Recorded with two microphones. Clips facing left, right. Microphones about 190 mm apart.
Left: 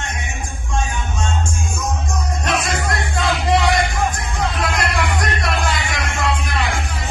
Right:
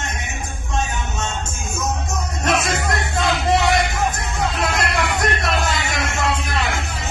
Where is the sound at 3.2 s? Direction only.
25° right (ahead or behind).